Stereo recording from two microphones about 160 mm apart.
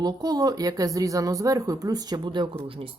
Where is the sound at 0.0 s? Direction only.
25° right (ahead or behind).